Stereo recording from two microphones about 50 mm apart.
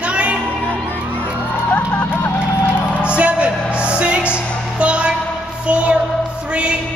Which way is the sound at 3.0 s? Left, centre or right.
Right.